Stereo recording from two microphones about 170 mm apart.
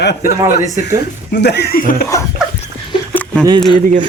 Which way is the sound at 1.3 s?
80° left.